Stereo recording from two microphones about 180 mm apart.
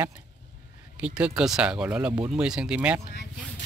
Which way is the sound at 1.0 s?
5° right (ahead or behind).